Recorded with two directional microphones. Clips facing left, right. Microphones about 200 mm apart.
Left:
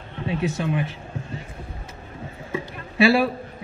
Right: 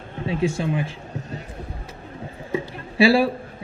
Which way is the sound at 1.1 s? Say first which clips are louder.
Right 1 dB; 40° right (ahead or behind).